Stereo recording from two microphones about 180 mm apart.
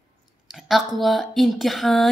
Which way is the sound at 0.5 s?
Centre (ahead or behind).